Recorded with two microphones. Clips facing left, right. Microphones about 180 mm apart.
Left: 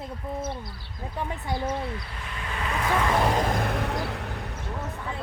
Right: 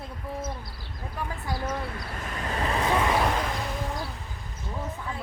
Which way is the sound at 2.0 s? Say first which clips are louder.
Right 4 dB; 45° right (ahead or behind).